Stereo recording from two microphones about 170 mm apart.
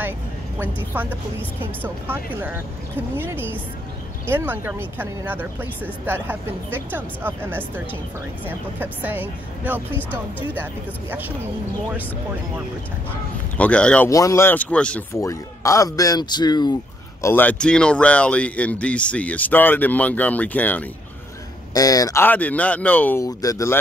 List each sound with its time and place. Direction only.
0.9 s speech: 10° right (ahead or behind)
13.6 s speech: 5° left (ahead or behind)
14.0 s speech: 15° left (ahead or behind)
15.1 s speech: 20° left (ahead or behind)
17.2 s speech: 10° left (ahead or behind)
21.7 s speech: 20° left (ahead or behind)
23.2 s speech: 20° left (ahead or behind)